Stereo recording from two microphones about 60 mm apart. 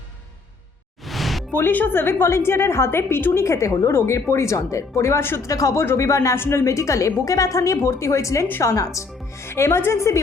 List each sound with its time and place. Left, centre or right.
1.0 s music: centre
1.5 s a woman's voice: left
3.3 s a woman's voice: left
5.2 s a woman's voice: left
5.5 s speech: left
5.7 s a woman's voice: left
6.0 s a woman's voice: left